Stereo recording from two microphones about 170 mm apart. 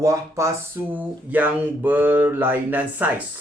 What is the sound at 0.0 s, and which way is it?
Speech, 15° right (ahead or behind).